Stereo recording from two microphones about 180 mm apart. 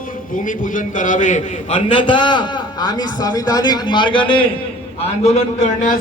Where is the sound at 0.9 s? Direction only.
45° left (ahead or behind).